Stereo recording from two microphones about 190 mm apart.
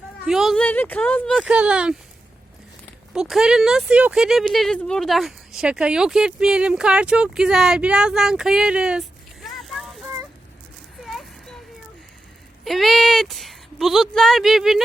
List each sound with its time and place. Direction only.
0.3 s speech: centre (ahead or behind)
3.1 s speech: centre (ahead or behind)
11.0 s a sound: centre (ahead or behind)
12.6 s speech: centre (ahead or behind)